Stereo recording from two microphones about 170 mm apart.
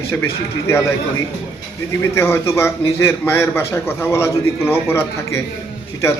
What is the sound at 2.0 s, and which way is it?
A man's voice, 15° left (ahead or behind).